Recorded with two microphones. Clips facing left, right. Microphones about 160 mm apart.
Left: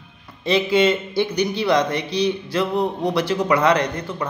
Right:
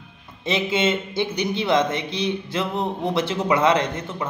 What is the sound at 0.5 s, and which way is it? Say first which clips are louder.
Speech: left 4 dB; 20° right (ahead or behind).